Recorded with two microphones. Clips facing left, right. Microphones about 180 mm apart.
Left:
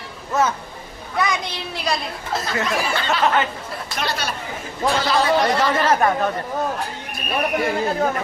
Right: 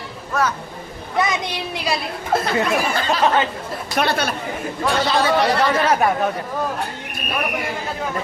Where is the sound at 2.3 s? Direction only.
55° right (ahead or behind).